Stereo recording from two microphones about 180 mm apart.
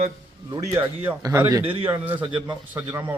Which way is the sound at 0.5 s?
15° right (ahead or behind).